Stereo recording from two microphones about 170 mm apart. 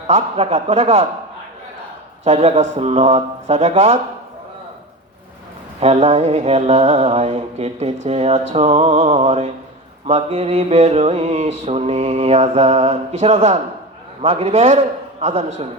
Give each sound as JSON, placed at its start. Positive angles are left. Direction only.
{"t": 0.1, "sound": "mantra", "side_deg": -40}
{"t": 2.2, "sound": "mantra", "side_deg": -40}
{"t": 5.8, "sound": "mantra", "side_deg": -40}
{"t": 14.2, "sound": "a man's voice", "side_deg": -40}